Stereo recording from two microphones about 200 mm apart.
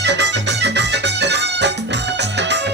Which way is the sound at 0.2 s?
60° right (ahead or behind).